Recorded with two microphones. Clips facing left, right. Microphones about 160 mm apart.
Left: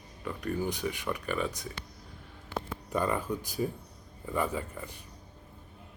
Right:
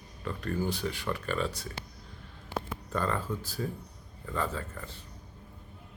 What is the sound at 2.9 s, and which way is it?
Speech, 15° left (ahead or behind).